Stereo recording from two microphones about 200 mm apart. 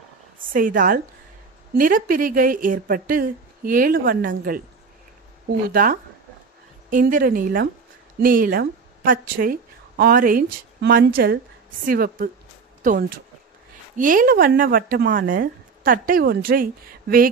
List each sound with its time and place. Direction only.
0.4 s a woman's voice: 45° right (ahead or behind)
5.7 s a woman's voice: 45° right (ahead or behind)